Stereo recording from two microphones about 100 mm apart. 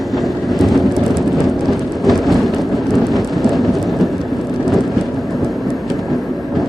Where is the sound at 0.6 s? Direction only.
Centre (ahead or behind).